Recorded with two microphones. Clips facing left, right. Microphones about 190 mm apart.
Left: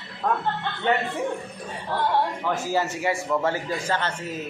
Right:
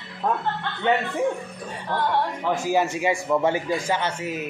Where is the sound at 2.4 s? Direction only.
15° right (ahead or behind).